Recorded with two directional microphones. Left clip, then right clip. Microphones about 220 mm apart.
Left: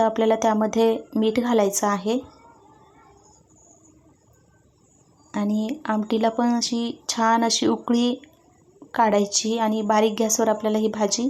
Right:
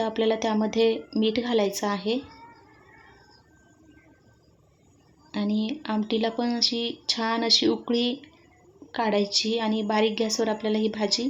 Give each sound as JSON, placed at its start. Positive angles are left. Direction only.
{"t": 0.0, "sound": "speech", "side_deg": 15}
{"t": 5.3, "sound": "a woman's voice", "side_deg": 15}